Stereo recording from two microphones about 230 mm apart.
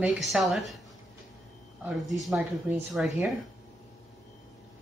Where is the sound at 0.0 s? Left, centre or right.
Centre.